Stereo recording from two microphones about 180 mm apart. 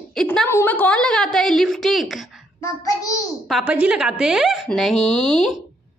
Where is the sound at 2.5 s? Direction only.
15° left (ahead or behind).